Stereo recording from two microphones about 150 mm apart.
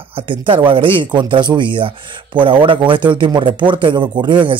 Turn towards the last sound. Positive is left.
turn(degrees=-30)  # may be behind; listen again after turning